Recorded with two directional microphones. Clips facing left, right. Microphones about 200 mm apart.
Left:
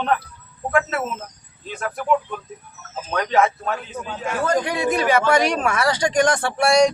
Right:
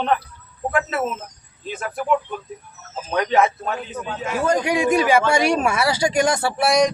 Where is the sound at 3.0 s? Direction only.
5° right (ahead or behind).